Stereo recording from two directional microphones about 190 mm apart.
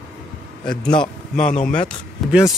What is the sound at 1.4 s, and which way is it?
Speech, 40° left (ahead or behind).